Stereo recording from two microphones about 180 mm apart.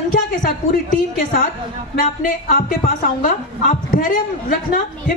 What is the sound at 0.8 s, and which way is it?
A woman's voice, 50° left (ahead or behind).